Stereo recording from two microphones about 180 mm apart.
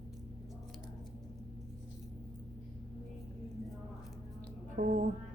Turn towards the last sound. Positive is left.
turn(degrees=-50)  # may be behind; listen again after turning